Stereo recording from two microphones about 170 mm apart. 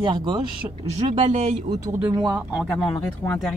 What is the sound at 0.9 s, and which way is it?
Speech, 40° right (ahead or behind).